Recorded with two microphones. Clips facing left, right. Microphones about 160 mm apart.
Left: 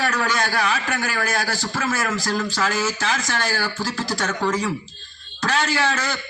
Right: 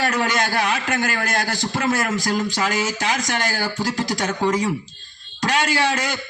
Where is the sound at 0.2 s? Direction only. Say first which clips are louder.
Right 1 dB; 25° right (ahead or behind).